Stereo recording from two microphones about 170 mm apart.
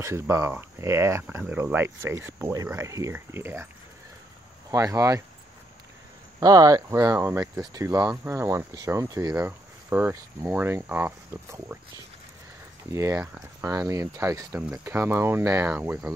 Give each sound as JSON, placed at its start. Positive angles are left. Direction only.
{"t": 0.0, "sound": "speech", "side_deg": -15}
{"t": 4.6, "sound": "speech", "side_deg": -20}
{"t": 6.4, "sound": "speech", "side_deg": -20}
{"t": 12.9, "sound": "speech", "side_deg": -15}